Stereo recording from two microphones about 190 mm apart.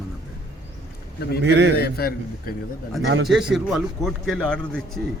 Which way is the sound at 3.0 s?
60° right (ahead or behind).